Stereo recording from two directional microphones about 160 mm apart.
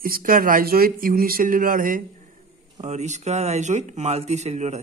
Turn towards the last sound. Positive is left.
turn(degrees=-45)  # may be behind; listen again after turning